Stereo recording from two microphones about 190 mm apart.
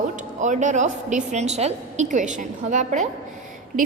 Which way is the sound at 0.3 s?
40° right (ahead or behind).